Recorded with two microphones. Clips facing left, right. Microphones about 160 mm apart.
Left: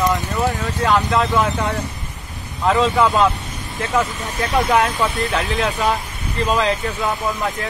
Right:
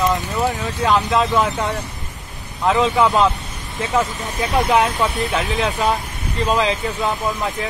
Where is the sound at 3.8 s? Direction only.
10° right (ahead or behind).